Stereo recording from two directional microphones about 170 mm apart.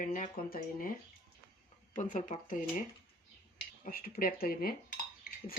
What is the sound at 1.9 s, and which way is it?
Speech, 50° left (ahead or behind).